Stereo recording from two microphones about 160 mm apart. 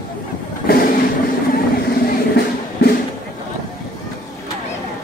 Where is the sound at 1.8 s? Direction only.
70° left (ahead or behind).